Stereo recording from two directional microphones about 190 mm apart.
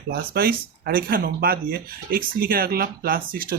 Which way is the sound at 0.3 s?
55° right (ahead or behind).